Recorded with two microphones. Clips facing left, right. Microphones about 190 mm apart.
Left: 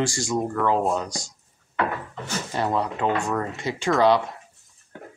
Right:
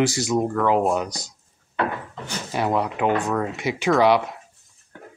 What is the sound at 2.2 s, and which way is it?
Speech, 10° right (ahead or behind).